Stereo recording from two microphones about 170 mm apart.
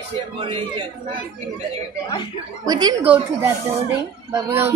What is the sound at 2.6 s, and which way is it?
A woman's voice, 25° right (ahead or behind).